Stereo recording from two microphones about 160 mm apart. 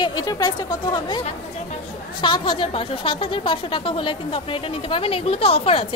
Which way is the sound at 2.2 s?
30° left (ahead or behind).